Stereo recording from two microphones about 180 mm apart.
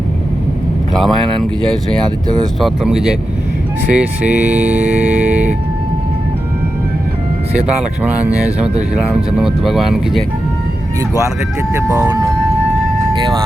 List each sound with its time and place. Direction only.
0.9 s speech: centre (ahead or behind)
2.6 s speech: centre (ahead or behind)
3.9 s speech: 10° right (ahead or behind)
7.8 s speech: 5° right (ahead or behind)
11.9 s speech: 20° right (ahead or behind)